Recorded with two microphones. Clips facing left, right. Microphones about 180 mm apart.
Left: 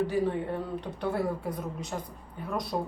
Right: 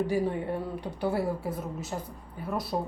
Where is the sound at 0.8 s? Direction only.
10° right (ahead or behind).